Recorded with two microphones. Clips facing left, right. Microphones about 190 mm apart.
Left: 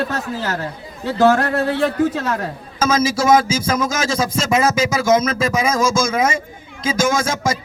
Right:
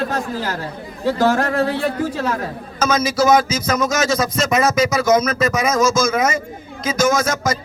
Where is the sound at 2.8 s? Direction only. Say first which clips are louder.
Even; 25° left (ahead or behind).